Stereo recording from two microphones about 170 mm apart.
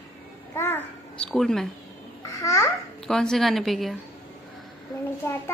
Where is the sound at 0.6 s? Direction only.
15° left (ahead or behind).